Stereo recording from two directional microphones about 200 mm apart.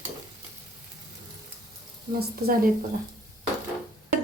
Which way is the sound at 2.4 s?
50° right (ahead or behind).